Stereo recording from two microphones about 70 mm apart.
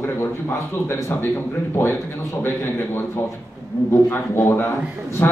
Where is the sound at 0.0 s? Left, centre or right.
Left.